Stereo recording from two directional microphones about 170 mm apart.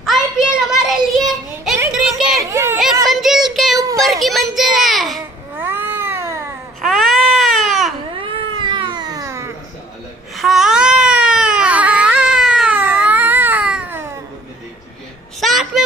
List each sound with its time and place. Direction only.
0.0 s child singing: centre (ahead or behind)
1.9 s a sound: 5° right (ahead or behind)
2.5 s a sound: 15° right (ahead or behind)
3.1 s child singing: centre (ahead or behind)
4.0 s children playing: centre (ahead or behind)
5.6 s cat: 10° right (ahead or behind)
6.8 s baby cry: centre (ahead or behind)
8.2 s cat: 30° right (ahead or behind)
10.3 s baby cry: centre (ahead or behind)
15.4 s a sound: centre (ahead or behind)